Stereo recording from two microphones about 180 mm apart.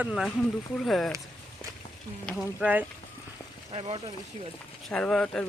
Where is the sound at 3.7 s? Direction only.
30° right (ahead or behind).